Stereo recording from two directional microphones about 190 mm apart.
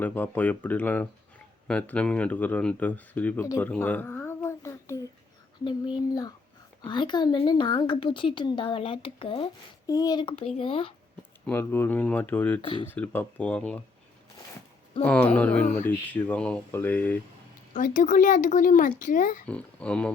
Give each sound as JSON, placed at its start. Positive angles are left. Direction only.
{"t": 0.0, "sound": "speech", "side_deg": 10}
{"t": 3.7, "sound": "a sound", "side_deg": 10}
{"t": 6.8, "sound": "a woman's voice", "side_deg": 25}
{"t": 9.8, "sound": "a woman's voice", "side_deg": 20}
{"t": 11.4, "sound": "speech", "side_deg": 10}
{"t": 15.0, "sound": "speech", "side_deg": 5}
{"t": 17.7, "sound": "speech", "side_deg": 45}
{"t": 19.5, "sound": "speech", "side_deg": 5}